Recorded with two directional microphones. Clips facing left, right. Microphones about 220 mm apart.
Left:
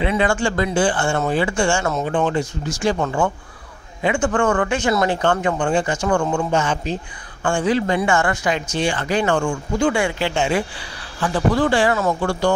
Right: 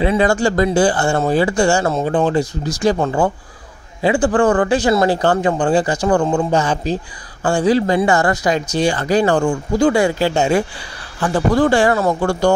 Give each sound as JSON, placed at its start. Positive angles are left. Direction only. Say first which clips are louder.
{"t": 0.0, "sound": "speech", "louder": "right 4 dB", "side_deg": -40}